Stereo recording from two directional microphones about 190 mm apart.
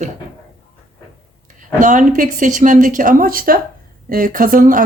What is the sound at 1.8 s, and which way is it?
A woman's voice, 45° right (ahead or behind).